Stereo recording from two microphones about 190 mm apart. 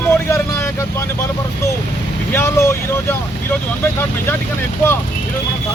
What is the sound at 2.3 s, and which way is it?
Speech, 15° left (ahead or behind).